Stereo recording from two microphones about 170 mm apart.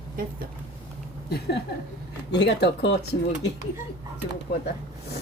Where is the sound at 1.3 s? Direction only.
80° left.